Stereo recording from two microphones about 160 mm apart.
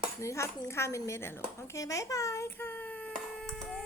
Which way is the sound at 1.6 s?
20° left (ahead or behind).